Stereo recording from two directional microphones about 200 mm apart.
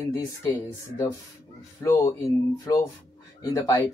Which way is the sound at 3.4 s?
20° left (ahead or behind).